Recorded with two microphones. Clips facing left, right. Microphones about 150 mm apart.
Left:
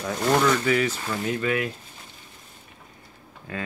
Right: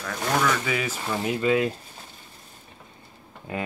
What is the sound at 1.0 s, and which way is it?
Speech, 20° right (ahead or behind).